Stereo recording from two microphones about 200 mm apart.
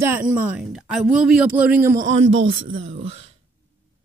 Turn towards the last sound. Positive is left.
turn(degrees=-30)  # may be behind; listen again after turning